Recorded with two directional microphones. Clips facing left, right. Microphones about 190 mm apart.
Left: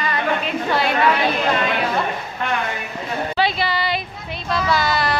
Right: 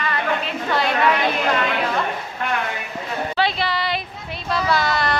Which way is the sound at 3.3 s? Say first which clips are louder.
Left 1 dB; 5° left (ahead or behind).